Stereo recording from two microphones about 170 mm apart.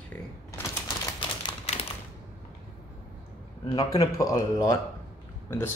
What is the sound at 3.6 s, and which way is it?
Speech, 30° left (ahead or behind).